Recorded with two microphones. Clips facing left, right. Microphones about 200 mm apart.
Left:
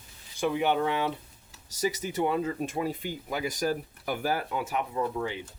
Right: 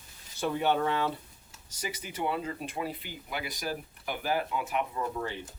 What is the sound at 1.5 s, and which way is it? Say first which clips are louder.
Speech: left 9 dB; 40° left (ahead or behind).